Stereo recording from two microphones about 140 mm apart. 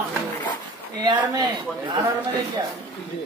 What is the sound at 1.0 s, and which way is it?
Speech, 30° right (ahead or behind).